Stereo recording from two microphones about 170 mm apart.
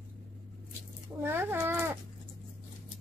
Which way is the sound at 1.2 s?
15° right (ahead or behind).